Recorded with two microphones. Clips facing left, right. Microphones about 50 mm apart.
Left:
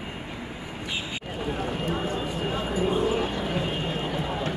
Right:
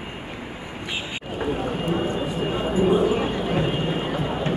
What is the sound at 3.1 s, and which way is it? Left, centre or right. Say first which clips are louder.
Vehicle: right 4 dB; centre.